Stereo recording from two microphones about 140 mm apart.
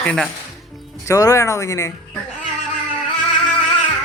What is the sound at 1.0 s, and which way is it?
Speech, 25° left (ahead or behind).